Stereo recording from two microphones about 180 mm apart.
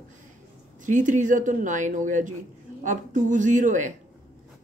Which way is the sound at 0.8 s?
45° right (ahead or behind).